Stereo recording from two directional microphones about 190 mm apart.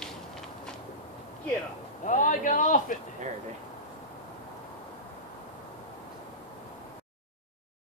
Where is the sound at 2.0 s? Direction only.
40° left (ahead or behind).